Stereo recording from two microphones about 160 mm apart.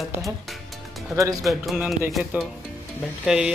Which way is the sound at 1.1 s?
20° right (ahead or behind).